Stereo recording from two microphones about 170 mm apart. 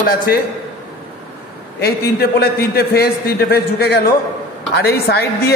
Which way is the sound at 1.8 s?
65° left (ahead or behind).